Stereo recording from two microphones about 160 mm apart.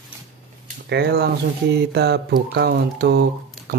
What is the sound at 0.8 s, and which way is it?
Speech, 90° right.